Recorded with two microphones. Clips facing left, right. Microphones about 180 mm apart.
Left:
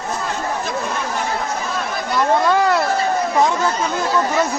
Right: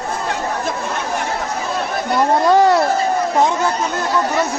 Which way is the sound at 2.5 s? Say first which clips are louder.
Right 4 dB; 35° right (ahead or behind).